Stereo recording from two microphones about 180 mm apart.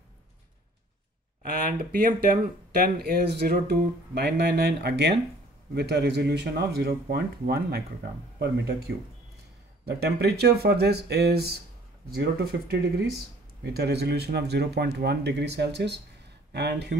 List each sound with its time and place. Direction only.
1.8 s speech: 60° right (ahead or behind)